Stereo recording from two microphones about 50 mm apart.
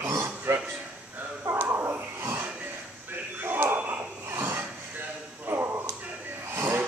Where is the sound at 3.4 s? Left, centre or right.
Right.